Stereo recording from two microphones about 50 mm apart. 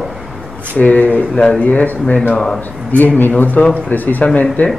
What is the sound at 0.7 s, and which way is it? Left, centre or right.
Speech, left.